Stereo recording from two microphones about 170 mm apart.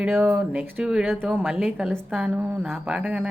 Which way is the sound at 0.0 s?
10° right (ahead or behind).